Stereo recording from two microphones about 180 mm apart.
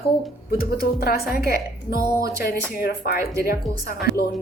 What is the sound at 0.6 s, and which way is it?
A woman's voice, 60° left (ahead or behind).